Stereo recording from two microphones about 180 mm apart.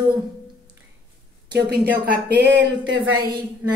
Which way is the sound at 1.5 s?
60° right (ahead or behind).